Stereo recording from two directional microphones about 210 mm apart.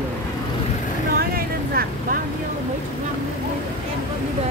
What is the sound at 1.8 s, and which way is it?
Vehicle, 45° right (ahead or behind).